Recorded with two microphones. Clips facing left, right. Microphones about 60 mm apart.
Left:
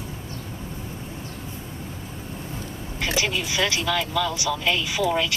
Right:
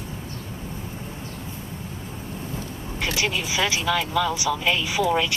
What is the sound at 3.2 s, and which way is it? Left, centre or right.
Speech, centre.